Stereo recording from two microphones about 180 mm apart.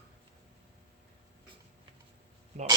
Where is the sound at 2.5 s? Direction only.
40° right (ahead or behind).